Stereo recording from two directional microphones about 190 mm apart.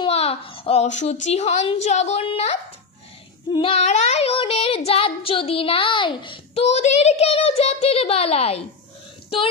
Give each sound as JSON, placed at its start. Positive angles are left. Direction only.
{"t": 0.0, "sound": "child singing", "side_deg": 30}